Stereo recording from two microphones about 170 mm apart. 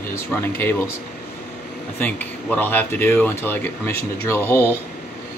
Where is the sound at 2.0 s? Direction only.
10° left (ahead or behind).